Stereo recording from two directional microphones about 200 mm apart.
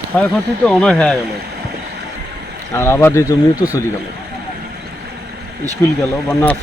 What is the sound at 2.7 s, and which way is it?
Speech, 10° left (ahead or behind).